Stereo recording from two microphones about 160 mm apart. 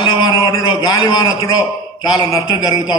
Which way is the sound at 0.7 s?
30° left (ahead or behind).